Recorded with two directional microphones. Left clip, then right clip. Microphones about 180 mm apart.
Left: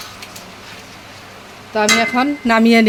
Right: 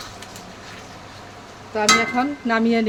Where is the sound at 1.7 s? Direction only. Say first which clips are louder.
Left 3 dB; 45° left (ahead or behind).